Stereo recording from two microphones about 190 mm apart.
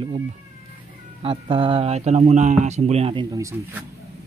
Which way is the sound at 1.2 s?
25° right (ahead or behind).